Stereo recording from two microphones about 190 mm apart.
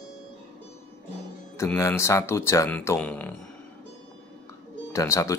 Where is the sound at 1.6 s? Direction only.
15° left (ahead or behind).